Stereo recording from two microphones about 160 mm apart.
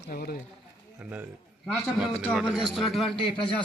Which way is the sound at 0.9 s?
10° right (ahead or behind).